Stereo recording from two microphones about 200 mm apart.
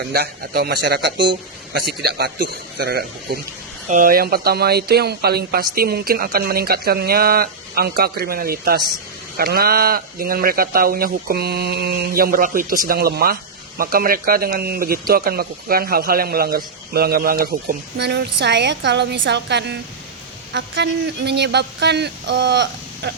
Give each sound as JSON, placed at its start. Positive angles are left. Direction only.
{"t": 0.1, "sound": "a man's voice", "side_deg": -50}